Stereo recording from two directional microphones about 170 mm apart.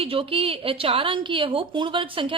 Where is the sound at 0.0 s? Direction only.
35° right (ahead or behind).